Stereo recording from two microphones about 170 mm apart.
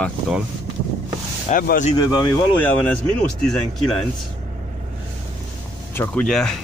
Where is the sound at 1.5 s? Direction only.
45° left (ahead or behind).